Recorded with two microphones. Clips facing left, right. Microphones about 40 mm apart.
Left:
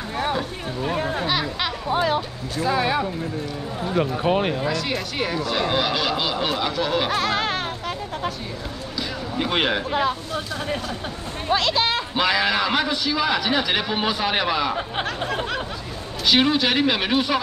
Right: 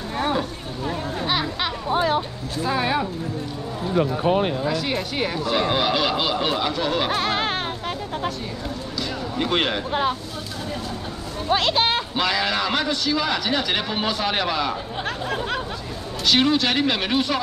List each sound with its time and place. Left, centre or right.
0.2 s boat: centre
0.8 s a sound: left
2.6 s speech: centre
4.0 s speech: left
4.6 s speech: centre
7.2 s music: right
8.9 s a sound: centre
11.5 s speech: right
12.2 s a man's voice: centre
16.3 s a man's voice: centre